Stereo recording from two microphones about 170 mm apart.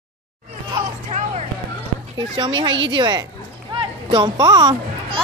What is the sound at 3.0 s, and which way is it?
A woman's voice, 25° right (ahead or behind).